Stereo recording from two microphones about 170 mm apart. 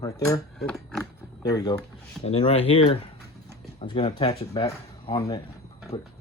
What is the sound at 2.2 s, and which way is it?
Speech, 35° left (ahead or behind).